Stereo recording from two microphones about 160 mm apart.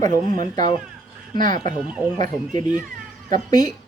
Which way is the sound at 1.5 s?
55° right (ahead or behind).